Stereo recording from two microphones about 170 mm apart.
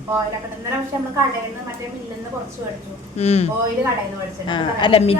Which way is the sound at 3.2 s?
35° left (ahead or behind).